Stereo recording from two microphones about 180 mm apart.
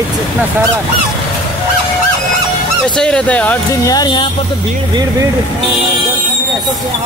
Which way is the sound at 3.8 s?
20° left (ahead or behind).